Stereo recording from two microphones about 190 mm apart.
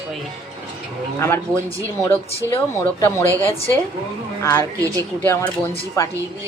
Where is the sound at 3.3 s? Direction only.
15° right (ahead or behind).